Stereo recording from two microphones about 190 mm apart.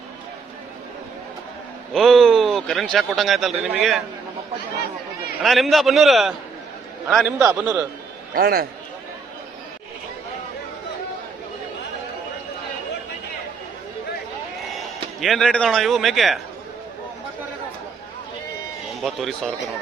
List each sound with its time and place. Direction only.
1.9 s a man's voice: centre (ahead or behind)
5.4 s a man's voice: centre (ahead or behind)
7.3 s a man's voice: 10° right (ahead or behind)
8.4 s a man's voice: 50° right (ahead or behind)
15.2 s a man's voice: centre (ahead or behind)
18.9 s a man's voice: centre (ahead or behind)